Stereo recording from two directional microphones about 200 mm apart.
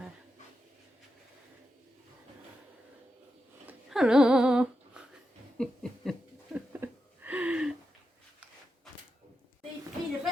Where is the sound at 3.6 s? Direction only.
5° right (ahead or behind).